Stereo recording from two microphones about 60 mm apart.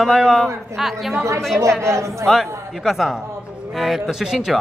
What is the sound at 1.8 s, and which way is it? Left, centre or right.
Speech, right.